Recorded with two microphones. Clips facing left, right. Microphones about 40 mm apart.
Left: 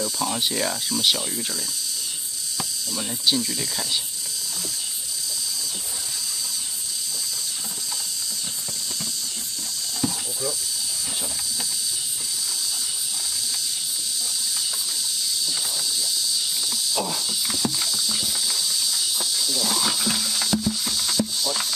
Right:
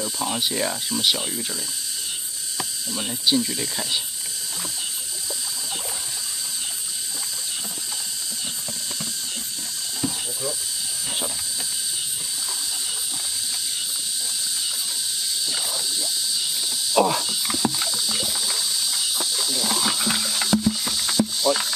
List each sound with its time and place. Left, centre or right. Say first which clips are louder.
0.0 s speech: even; centre
2.9 s speech: right 2 dB; centre
10.0 s hiss: left 1 dB; centre
16.9 s a sound: right 10 dB; right
17.5 s a sound: right 2 dB; centre
19.5 s music: even; centre